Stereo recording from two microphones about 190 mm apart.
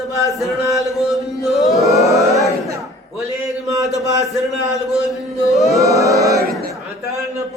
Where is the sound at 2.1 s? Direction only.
15° right (ahead or behind).